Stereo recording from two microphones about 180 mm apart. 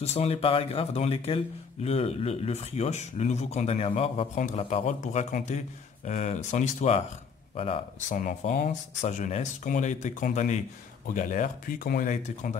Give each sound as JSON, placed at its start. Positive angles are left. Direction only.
{"t": 0.0, "sound": "speech", "side_deg": 35}
{"t": 8.2, "sound": "speech", "side_deg": 45}